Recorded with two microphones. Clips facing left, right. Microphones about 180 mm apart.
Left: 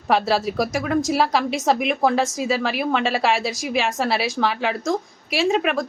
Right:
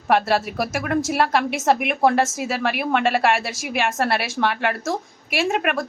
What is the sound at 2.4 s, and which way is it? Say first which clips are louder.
A woman's voice: left 2 dB; 60° right (ahead or behind).